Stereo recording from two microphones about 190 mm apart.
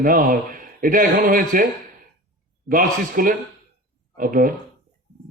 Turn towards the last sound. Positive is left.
turn(degrees=-45)  # may be behind; listen again after turning